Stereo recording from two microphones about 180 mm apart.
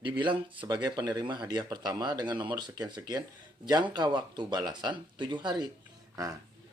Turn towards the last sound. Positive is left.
turn(degrees=-20)  # may be behind; listen again after turning